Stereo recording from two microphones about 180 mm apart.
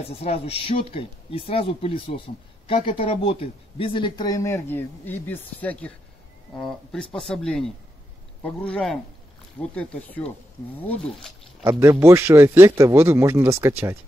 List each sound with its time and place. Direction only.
0.0 s speech: 35° left (ahead or behind); by 10.3 s 10° left (ahead or behind)
11.6 s a man's voice: 15° right (ahead or behind)